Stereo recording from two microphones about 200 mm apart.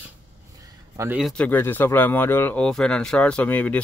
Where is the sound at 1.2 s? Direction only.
5° left (ahead or behind).